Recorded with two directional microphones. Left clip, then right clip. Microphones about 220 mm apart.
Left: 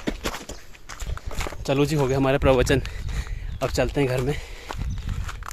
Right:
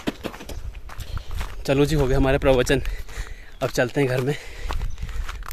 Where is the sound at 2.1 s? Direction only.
Centre (ahead or behind).